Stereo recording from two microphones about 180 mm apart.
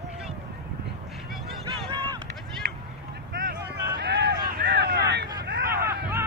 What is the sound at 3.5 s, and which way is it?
Vehicle, 65° right (ahead or behind).